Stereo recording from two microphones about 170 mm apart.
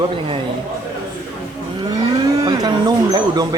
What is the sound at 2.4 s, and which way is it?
Speech, 20° right (ahead or behind).